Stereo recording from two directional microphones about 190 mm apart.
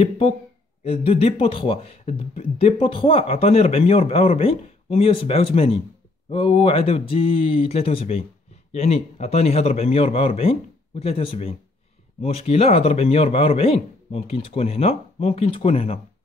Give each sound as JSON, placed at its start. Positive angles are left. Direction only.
{"t": 0.8, "sound": "speech", "side_deg": 30}